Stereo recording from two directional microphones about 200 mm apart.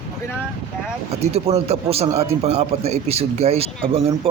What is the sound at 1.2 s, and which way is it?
Speech, 30° right (ahead or behind).